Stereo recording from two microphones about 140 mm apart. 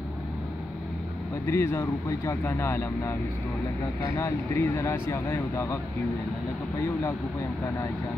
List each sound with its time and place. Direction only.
1.5 s speech: 20° left (ahead or behind)
4.2 s speech: 20° left (ahead or behind)
6.8 s speech: 20° left (ahead or behind)